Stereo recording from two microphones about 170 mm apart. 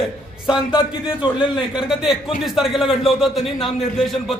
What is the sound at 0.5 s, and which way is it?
Speech, 25° left (ahead or behind).